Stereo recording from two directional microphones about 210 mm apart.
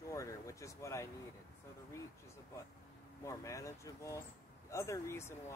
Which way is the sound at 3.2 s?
15° left (ahead or behind).